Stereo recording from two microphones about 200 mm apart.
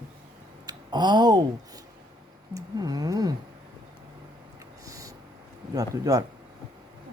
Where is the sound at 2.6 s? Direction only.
20° right (ahead or behind).